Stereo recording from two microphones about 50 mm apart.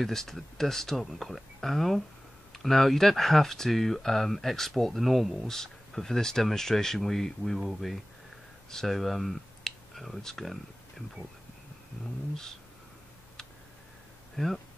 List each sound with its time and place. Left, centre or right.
0.0 s speech: centre
5.5 s speech: centre
8.8 s speech: centre
14.3 s speech: centre